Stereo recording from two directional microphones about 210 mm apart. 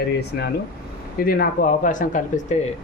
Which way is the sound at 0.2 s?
50° left (ahead or behind).